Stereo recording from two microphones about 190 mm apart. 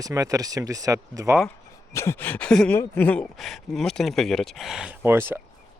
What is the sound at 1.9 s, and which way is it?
Speech, 15° left (ahead or behind).